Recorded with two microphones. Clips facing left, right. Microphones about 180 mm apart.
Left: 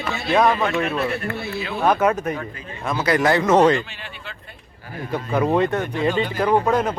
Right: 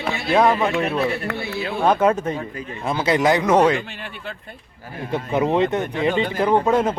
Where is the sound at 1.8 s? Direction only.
25° right (ahead or behind); by 3.8 s 10° right (ahead or behind).